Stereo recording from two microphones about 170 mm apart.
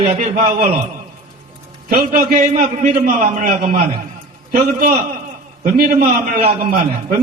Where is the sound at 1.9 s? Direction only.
55° right (ahead or behind).